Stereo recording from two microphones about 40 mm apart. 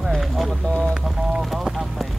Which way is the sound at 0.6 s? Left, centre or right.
Centre.